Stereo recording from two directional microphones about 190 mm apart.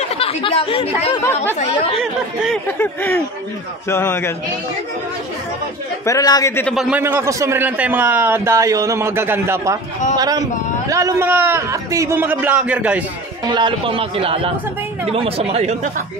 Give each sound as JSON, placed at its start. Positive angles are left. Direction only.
{"t": 0.1, "sound": "speech", "side_deg": 30}
{"t": 1.2, "sound": "a man's voice", "side_deg": 10}
{"t": 2.8, "sound": "a man's voice", "side_deg": 10}
{"t": 6.0, "sound": "a man's voice", "side_deg": 20}
{"t": 6.7, "sound": "a man's voice", "side_deg": 0}
{"t": 7.0, "sound": "a man's voice", "side_deg": -10}
{"t": 13.4, "sound": "a man's voice", "side_deg": -25}